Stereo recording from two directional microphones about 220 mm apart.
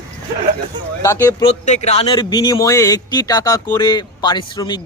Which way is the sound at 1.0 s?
10° left (ahead or behind).